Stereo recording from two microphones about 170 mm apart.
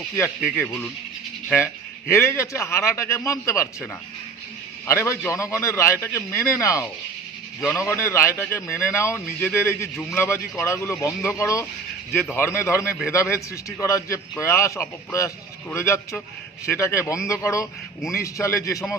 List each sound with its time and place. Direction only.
0.2 s a man's voice: 15° left (ahead or behind)